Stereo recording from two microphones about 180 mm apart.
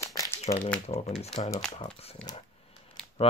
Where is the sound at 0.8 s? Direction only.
35° left (ahead or behind).